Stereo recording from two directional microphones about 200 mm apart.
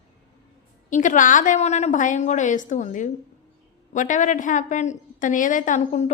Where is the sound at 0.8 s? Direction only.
40° left (ahead or behind).